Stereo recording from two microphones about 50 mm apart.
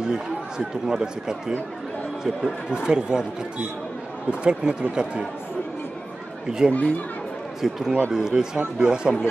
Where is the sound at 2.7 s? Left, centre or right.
Centre.